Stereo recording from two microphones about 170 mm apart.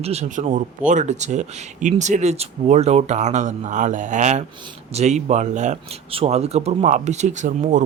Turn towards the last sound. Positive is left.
turn(degrees=-45)  # may be behind; listen again after turning